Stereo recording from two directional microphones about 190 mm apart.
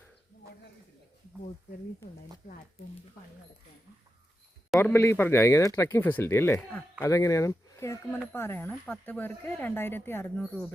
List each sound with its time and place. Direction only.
2.0 s speech: 15° left (ahead or behind)
2.4 s speech: 45° left (ahead or behind)
4.8 s speech: 15° left (ahead or behind)